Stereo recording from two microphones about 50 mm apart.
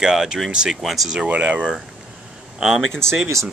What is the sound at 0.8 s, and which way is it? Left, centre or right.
Speech, centre.